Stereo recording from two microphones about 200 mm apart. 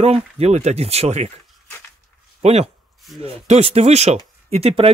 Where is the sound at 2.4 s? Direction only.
30° right (ahead or behind).